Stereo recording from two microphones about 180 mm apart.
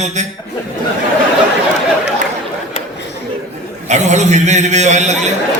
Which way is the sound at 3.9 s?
40° right (ahead or behind).